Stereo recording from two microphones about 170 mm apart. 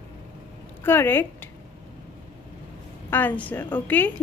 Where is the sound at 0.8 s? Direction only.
15° left (ahead or behind).